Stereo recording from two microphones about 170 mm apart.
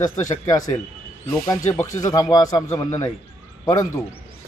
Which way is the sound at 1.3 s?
20° left (ahead or behind).